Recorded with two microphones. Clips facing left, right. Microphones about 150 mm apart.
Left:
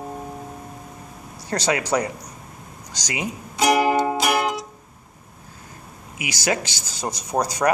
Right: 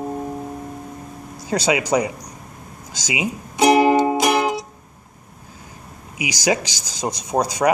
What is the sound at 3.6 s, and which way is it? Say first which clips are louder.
Music: right 4 dB; 25° right (ahead or behind).